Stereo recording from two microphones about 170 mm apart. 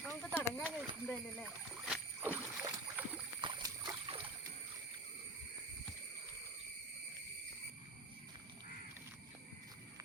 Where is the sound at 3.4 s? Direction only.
25° right (ahead or behind).